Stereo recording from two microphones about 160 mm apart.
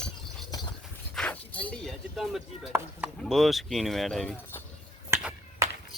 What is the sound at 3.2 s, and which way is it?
Speech, centre (ahead or behind).